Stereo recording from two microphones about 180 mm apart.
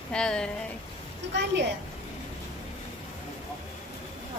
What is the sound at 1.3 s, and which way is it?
Speech, 75° right (ahead or behind).